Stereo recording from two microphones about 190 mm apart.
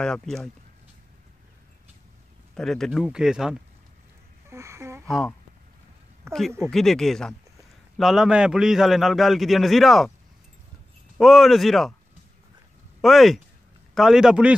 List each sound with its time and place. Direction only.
0.0 s a man's voice: 5° left (ahead or behind)
2.5 s a man's voice: centre (ahead or behind)
4.5 s a sound: 15° right (ahead or behind)
5.0 s a man's voice: 5° left (ahead or behind)
6.2 s a sound: 15° right (ahead or behind)
6.7 s a man's voice: centre (ahead or behind)
11.1 s a man's voice: centre (ahead or behind)
13.0 s a man's voice: centre (ahead or behind)